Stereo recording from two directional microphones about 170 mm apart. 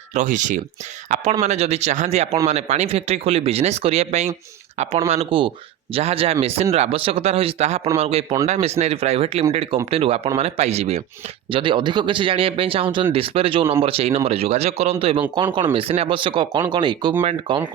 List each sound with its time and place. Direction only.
0.1 s speech: 45° right (ahead or behind); by 17.6 s 30° right (ahead or behind)